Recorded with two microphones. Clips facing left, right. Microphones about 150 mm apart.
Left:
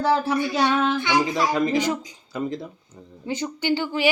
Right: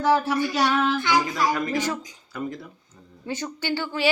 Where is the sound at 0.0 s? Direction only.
25° left (ahead or behind).